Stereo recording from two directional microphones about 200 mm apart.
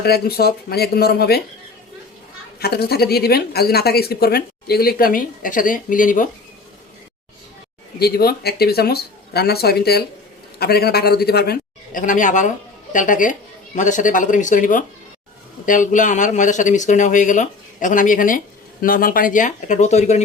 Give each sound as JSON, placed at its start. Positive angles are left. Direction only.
{"t": 0.0, "sound": "speech", "side_deg": 50}
{"t": 2.6, "sound": "speech", "side_deg": 50}
{"t": 7.9, "sound": "speech", "side_deg": 50}